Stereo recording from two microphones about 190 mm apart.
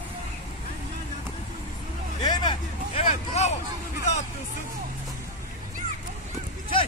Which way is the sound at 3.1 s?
35° left (ahead or behind).